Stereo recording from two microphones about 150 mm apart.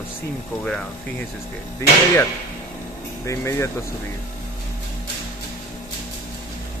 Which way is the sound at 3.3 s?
20° left (ahead or behind).